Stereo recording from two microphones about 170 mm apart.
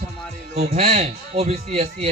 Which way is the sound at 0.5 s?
40° right (ahead or behind).